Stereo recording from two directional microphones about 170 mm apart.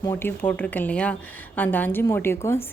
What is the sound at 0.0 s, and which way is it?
A woman's voice, 15° left (ahead or behind).